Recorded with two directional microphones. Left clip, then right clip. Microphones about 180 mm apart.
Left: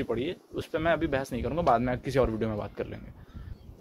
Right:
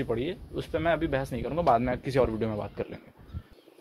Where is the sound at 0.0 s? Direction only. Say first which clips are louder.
Right 1 dB; 5° left (ahead or behind).